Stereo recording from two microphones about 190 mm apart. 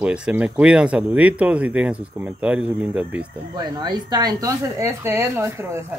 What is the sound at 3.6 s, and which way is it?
Speech, 20° right (ahead or behind).